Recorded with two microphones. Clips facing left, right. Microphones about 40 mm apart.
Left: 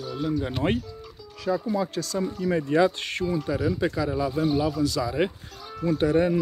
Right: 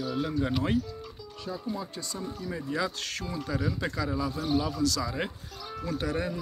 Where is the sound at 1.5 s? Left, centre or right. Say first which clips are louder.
Left 10 dB; left.